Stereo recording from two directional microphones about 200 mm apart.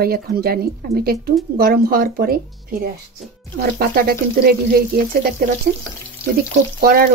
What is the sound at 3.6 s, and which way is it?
A woman's voice, 50° right (ahead or behind).